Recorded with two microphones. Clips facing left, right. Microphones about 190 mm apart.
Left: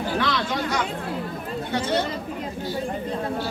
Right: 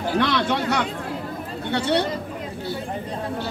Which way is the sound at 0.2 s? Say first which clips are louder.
Right 3 dB; 65° right (ahead or behind).